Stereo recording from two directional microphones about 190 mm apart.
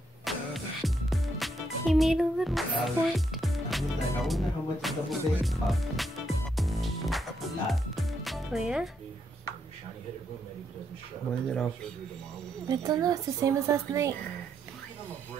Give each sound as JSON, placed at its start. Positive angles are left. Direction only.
{"t": 0.2, "sound": "music", "side_deg": 0}
{"t": 11.4, "sound": "speech", "side_deg": 5}
{"t": 12.6, "sound": "a woman's voice", "side_deg": -20}